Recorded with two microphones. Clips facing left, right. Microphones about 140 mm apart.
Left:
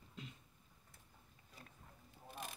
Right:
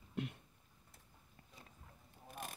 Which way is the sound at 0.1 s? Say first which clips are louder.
Right 11 dB; 65° right (ahead or behind).